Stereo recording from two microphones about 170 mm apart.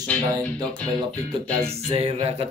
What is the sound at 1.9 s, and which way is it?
Music, 35° right (ahead or behind).